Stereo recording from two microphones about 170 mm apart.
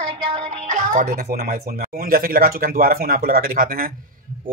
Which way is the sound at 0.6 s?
45° right (ahead or behind).